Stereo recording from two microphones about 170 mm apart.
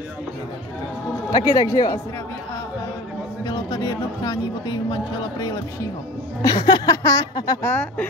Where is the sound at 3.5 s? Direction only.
25° left (ahead or behind).